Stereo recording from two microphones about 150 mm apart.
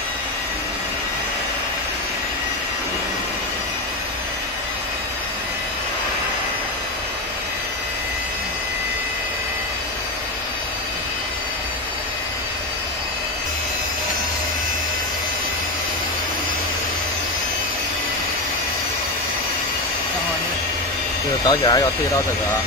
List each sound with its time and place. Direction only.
21.5 s speech: 25° left (ahead or behind)